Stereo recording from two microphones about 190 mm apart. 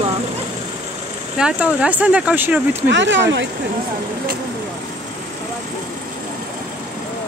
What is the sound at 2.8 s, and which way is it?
Speech, 70° right (ahead or behind).